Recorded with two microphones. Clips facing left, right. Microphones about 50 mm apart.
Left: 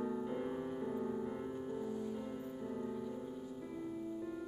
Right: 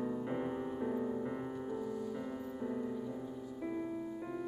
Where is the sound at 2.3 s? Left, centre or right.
Centre.